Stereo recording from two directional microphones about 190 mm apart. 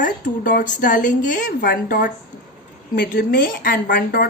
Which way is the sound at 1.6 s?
60° left (ahead or behind).